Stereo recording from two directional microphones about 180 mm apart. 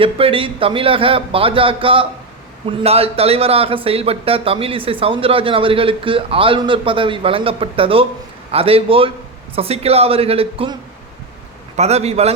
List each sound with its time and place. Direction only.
0.0 s speech: 30° right (ahead or behind)
11.8 s speech: 35° right (ahead or behind)